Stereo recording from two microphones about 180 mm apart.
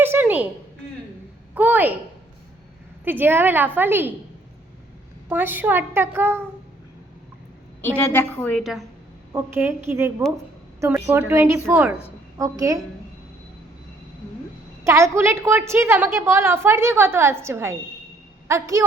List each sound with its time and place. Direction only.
0.0 s a sound: 10° right (ahead or behind)
1.5 s a woman's voice: 10° right (ahead or behind)
3.0 s a woman's voice: 10° right (ahead or behind)
5.3 s a woman's voice: 10° right (ahead or behind)
7.8 s a woman's voice: 10° left (ahead or behind)
9.3 s a woman's voice: 10° right (ahead or behind)
14.8 s a woman's voice: 15° right (ahead or behind)